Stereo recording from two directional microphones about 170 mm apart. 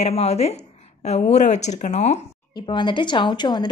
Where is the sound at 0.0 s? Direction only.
40° left (ahead or behind).